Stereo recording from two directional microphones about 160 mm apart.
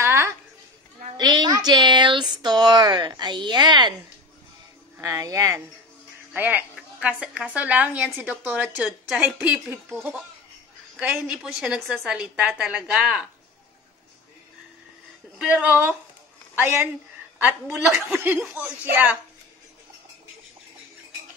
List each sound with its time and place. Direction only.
0.0 s a sound: 15° right (ahead or behind)
4.9 s a woman's voice: 20° right (ahead or behind)
11.0 s a woman's voice: 10° right (ahead or behind)
15.3 s a woman's voice: 5° right (ahead or behind)